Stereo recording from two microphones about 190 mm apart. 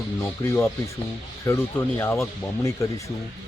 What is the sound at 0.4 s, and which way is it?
Speech, 15° left (ahead or behind).